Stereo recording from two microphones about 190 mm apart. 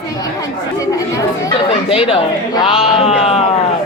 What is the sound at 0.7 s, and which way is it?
Speech, 15° left (ahead or behind).